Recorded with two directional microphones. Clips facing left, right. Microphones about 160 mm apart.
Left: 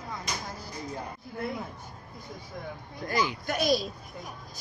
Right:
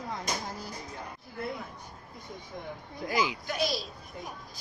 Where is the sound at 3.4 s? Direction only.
50° left (ahead or behind).